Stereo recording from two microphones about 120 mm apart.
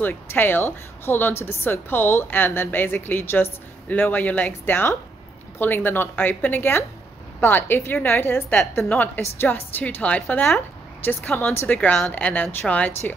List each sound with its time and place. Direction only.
0.0 s a woman's voice: 15° left (ahead or behind)